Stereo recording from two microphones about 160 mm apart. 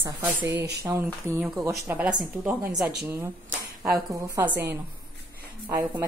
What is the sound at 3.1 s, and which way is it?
A woman's voice, 10° right (ahead or behind).